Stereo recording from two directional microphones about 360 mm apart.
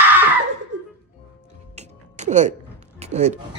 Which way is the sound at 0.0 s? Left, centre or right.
Centre.